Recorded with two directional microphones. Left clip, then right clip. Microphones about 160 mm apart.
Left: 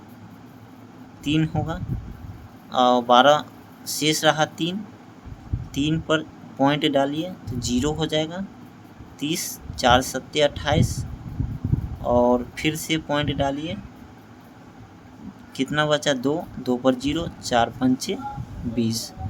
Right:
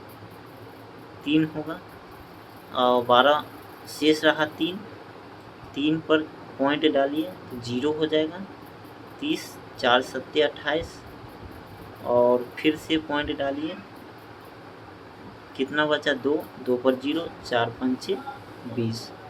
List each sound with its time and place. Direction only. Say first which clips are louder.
1.2 s speech: even; 50° left (ahead or behind)
5.7 s speech: even; 50° left (ahead or behind)
12.0 s speech: left 1 dB; 50° left (ahead or behind)
15.5 s speech: left 2 dB; 50° left (ahead or behind)